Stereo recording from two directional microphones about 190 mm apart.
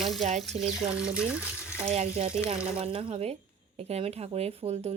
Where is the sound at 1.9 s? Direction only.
35° right (ahead or behind).